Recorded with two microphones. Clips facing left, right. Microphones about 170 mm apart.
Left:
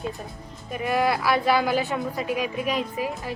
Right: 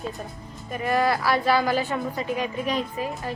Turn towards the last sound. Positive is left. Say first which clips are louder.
# left 1 dB
turn(degrees=10)  # may be behind; listen again after turning